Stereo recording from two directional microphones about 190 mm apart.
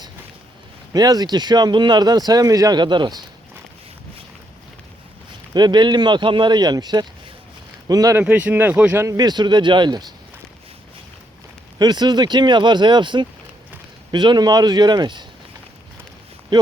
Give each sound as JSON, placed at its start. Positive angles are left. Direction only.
{"t": 0.9, "sound": "speech", "side_deg": -20}
{"t": 5.5, "sound": "speech", "side_deg": -20}
{"t": 8.2, "sound": "speech", "side_deg": -10}
{"t": 11.8, "sound": "speech", "side_deg": -20}